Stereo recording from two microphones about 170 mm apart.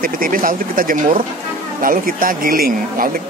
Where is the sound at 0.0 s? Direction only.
55° right (ahead or behind).